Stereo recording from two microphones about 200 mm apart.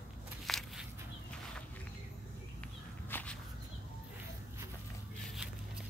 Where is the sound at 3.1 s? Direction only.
5° left (ahead or behind).